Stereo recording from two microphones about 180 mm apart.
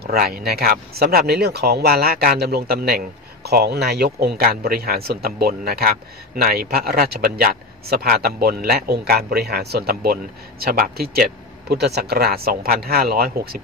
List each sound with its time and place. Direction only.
0.0 s speech: 55° right (ahead or behind)